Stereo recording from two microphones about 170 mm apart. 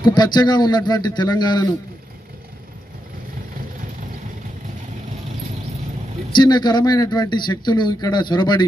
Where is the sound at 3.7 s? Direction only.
50° right (ahead or behind).